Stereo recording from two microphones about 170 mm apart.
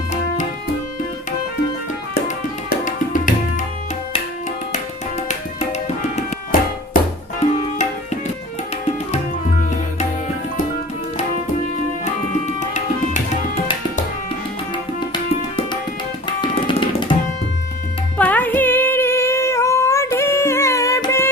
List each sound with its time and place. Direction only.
2.2 s music: 50° left (ahead or behind)
5.5 s tabla: 40° left (ahead or behind)
12.3 s tabla: 45° left (ahead or behind)
15.1 s tabla: 25° left (ahead or behind)
16.4 s music: 25° left (ahead or behind)
18.2 s humming: 10° left (ahead or behind)